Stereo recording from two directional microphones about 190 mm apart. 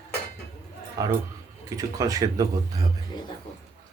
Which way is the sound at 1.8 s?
15° right (ahead or behind).